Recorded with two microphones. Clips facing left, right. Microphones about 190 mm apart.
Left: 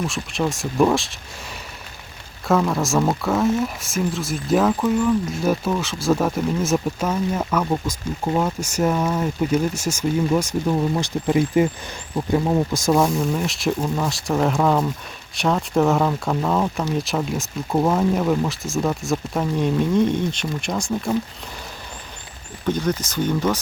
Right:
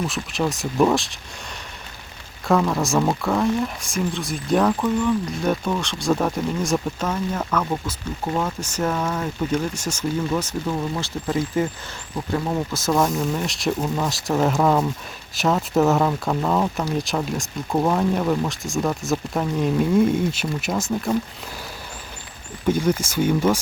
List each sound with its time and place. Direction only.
0.1 s speech: centre (ahead or behind)
2.5 s speech: centre (ahead or behind)
13.0 s speech: centre (ahead or behind)
22.6 s speech: 10° right (ahead or behind)